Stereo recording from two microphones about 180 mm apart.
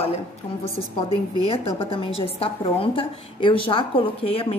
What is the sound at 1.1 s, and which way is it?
A woman's voice, 30° left (ahead or behind).